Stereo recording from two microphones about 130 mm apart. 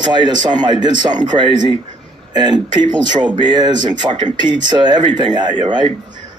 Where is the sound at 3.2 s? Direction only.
35° right (ahead or behind).